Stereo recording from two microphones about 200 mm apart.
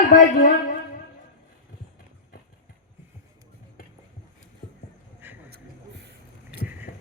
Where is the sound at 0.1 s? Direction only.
40° left (ahead or behind).